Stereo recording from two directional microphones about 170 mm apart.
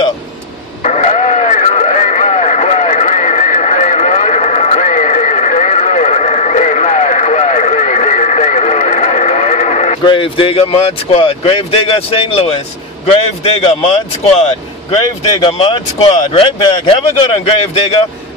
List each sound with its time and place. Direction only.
0.8 s a sound: 45° left (ahead or behind)
10.0 s speech: 30° left (ahead or behind)
15.5 s speech: 30° left (ahead or behind)